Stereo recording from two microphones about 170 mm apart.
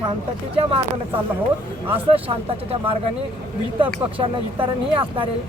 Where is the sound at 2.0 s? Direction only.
35° right (ahead or behind).